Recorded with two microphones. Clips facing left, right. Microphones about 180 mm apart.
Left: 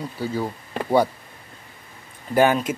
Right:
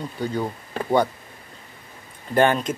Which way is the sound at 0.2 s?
5° left (ahead or behind).